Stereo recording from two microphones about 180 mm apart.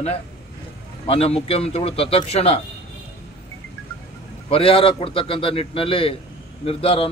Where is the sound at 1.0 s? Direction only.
30° left (ahead or behind).